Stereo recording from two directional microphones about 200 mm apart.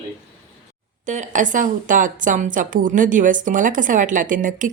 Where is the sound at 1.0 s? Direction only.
35° right (ahead or behind).